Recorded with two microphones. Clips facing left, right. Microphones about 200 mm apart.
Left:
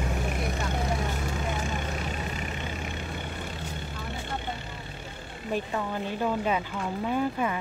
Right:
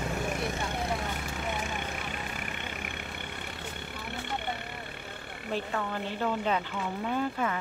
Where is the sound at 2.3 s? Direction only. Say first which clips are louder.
Left 4 dB; 60° right (ahead or behind).